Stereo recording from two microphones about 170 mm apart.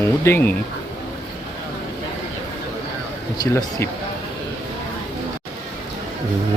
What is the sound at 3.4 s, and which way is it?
Speech, 15° left (ahead or behind).